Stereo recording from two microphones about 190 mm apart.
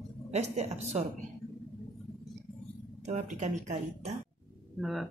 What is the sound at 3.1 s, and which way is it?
Speech, 40° right (ahead or behind).